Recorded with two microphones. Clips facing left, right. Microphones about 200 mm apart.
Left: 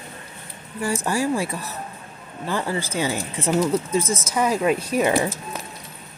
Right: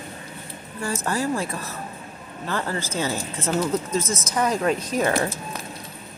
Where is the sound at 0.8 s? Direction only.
10° left (ahead or behind).